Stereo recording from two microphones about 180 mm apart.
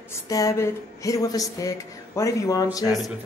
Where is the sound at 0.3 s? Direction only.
20° left (ahead or behind).